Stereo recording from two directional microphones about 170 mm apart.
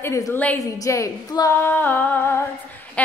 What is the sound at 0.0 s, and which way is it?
A woman's voice, 15° left (ahead or behind).